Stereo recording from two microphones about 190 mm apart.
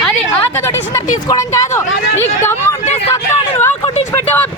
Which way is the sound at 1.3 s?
15° left (ahead or behind).